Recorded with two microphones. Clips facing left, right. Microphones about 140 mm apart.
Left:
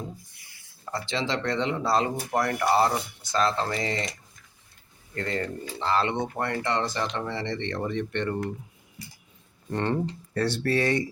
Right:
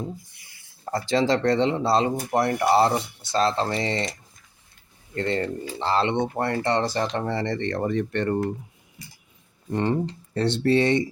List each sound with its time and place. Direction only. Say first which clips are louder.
0.9 s speech: right 7 dB; 40° right (ahead or behind)
5.1 s speech: right 5 dB; 30° right (ahead or behind)
9.7 s speech: right 3 dB; 15° right (ahead or behind)